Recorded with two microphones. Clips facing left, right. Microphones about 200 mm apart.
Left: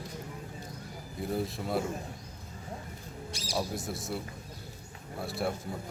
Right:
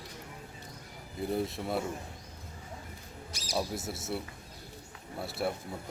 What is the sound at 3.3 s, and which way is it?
Music, 30° left (ahead or behind).